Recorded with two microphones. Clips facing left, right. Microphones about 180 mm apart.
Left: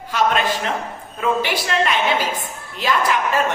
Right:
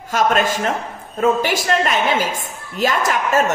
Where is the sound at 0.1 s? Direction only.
45° right (ahead or behind).